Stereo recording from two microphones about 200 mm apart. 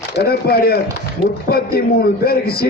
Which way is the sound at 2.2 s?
50° left (ahead or behind).